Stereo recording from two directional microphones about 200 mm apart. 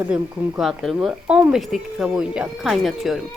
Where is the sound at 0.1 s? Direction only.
5° right (ahead or behind).